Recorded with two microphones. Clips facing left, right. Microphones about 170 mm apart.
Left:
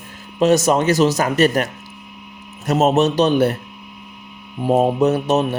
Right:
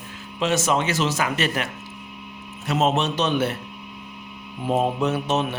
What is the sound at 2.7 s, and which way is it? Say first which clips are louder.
Speech: left 6 dB; 45° left (ahead or behind).